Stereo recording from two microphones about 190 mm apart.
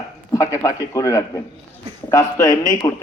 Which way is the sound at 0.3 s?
15° left (ahead or behind).